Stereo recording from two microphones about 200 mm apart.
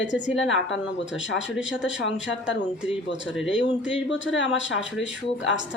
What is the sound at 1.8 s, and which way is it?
Speech, 65° left (ahead or behind).